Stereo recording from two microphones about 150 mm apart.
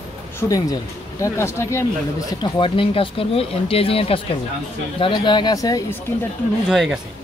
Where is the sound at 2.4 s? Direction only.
35° left (ahead or behind).